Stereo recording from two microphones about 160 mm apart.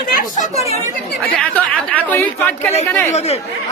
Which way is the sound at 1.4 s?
10° left (ahead or behind).